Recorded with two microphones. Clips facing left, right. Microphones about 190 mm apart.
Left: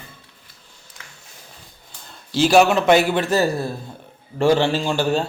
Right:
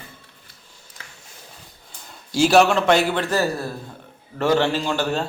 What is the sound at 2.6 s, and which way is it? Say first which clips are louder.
Speech: left 2 dB; 10° left (ahead or behind).